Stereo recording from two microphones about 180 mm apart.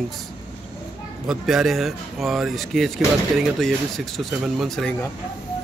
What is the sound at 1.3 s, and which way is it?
Speech, centre (ahead or behind).